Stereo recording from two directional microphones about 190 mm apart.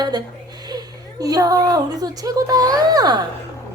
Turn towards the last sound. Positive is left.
turn(degrees=-20)  # may be behind; listen again after turning